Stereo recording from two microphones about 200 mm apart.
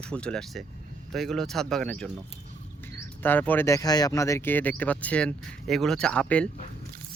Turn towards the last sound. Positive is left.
turn(degrees=5)  # may be behind; listen again after turning